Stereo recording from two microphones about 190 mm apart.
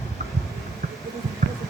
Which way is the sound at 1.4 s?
40° right (ahead or behind).